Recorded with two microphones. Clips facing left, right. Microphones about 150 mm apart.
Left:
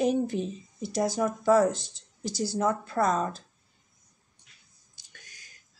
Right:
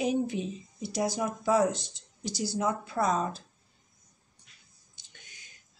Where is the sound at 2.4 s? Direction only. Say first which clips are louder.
Left 3 dB; 10° right (ahead or behind).